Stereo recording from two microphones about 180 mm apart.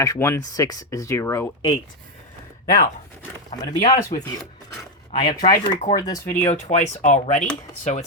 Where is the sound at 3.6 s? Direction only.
20° left (ahead or behind).